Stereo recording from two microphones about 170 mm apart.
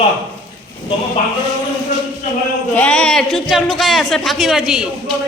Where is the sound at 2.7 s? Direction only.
5° left (ahead or behind).